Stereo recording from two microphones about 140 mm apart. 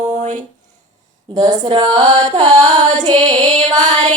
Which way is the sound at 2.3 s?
60° right (ahead or behind).